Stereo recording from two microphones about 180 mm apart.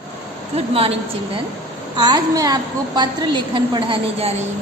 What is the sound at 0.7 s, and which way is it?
Speech, 30° right (ahead or behind).